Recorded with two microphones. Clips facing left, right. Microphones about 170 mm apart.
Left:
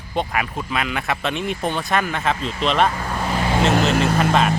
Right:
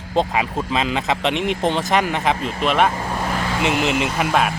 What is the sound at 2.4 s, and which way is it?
Speech, 50° right (ahead or behind).